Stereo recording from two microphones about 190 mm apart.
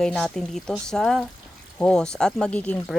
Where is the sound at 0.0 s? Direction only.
5° left (ahead or behind).